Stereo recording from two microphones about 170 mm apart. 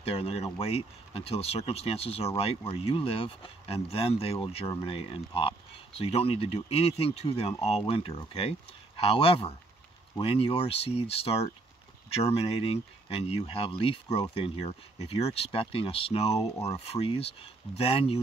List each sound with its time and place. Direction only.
0.0 s speech: 35° left (ahead or behind)